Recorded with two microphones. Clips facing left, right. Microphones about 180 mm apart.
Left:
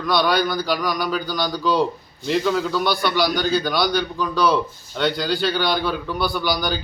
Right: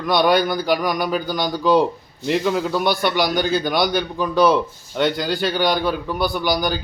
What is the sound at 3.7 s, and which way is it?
Speech, 50° right (ahead or behind).